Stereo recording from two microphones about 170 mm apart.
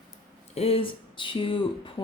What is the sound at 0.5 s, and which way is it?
Speech, 35° left (ahead or behind).